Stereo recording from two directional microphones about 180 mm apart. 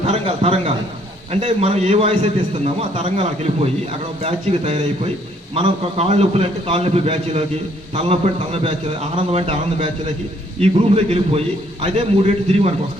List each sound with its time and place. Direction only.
0.1 s a man's voice: 35° right (ahead or behind)